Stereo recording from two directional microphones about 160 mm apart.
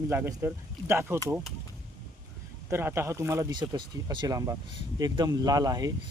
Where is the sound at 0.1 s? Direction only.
15° right (ahead or behind).